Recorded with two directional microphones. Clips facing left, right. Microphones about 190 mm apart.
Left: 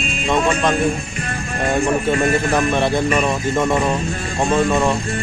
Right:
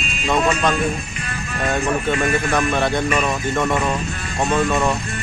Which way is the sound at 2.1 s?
35° left (ahead or behind).